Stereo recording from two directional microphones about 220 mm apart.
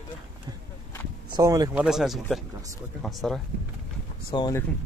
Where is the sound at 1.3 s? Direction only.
15° right (ahead or behind).